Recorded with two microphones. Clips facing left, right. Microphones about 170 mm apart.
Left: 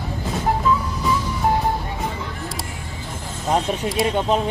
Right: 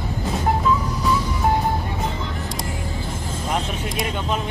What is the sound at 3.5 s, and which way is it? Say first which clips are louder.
Speech: left 7 dB; 35° left (ahead or behind).